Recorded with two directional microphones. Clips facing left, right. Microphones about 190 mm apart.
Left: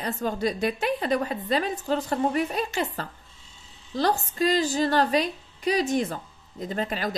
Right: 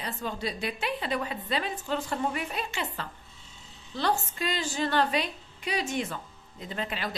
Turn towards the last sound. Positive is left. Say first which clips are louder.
# left 5 dB
turn(degrees=40)  # may be behind; listen again after turning